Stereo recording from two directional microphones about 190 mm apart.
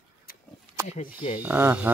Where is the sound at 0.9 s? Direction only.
30° left (ahead or behind).